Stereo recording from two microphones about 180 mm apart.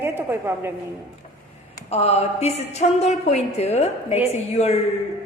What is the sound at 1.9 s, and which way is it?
A woman's voice, 35° left (ahead or behind).